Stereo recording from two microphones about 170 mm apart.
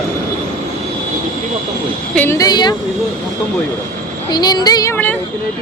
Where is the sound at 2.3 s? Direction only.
25° left (ahead or behind).